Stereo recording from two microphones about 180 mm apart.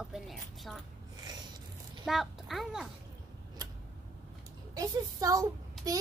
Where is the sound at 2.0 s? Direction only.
Centre (ahead or behind).